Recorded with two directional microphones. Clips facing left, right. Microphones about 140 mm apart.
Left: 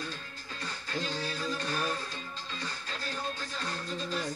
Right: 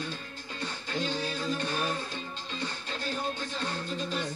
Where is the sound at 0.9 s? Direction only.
25° right (ahead or behind).